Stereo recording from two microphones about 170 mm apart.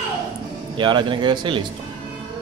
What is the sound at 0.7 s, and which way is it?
Speech, 25° right (ahead or behind).